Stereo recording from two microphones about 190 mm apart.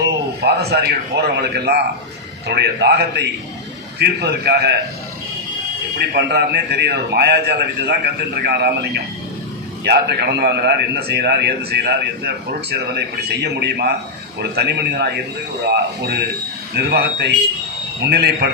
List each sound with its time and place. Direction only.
0.0 s a man's voice: 60° right (ahead or behind)
6.1 s a man's voice: 65° right (ahead or behind)